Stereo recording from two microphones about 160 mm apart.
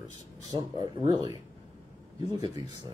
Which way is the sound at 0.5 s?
25° right (ahead or behind).